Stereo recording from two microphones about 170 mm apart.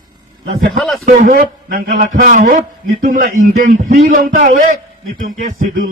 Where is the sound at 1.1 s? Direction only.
50° right (ahead or behind).